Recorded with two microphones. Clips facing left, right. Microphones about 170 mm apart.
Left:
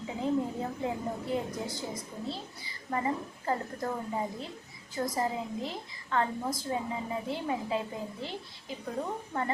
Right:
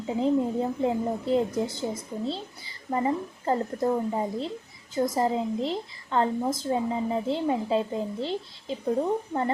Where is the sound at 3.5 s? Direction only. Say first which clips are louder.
Right 7 dB; 30° right (ahead or behind).